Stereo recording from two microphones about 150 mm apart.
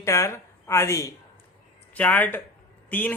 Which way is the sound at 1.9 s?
10° left (ahead or behind).